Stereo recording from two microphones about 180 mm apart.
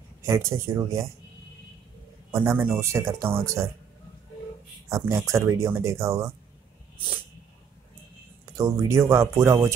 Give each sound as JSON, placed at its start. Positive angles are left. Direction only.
{"t": 0.2, "sound": "speech", "side_deg": -15}
{"t": 2.3, "sound": "speech", "side_deg": -15}
{"t": 4.8, "sound": "speech", "side_deg": -15}
{"t": 8.5, "sound": "speech", "side_deg": -20}